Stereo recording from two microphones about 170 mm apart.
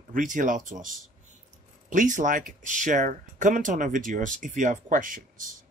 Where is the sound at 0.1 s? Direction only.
50° right (ahead or behind).